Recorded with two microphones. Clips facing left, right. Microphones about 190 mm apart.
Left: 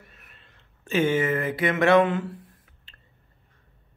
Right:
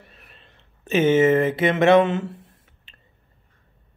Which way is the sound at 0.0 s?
30° right (ahead or behind).